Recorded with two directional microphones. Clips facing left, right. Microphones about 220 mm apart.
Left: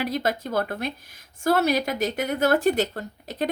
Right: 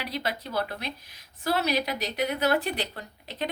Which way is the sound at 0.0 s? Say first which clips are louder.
Left 7 dB; 45° left (ahead or behind).